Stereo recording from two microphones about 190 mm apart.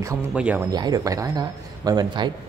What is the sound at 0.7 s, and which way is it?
A man's voice, 20° right (ahead or behind).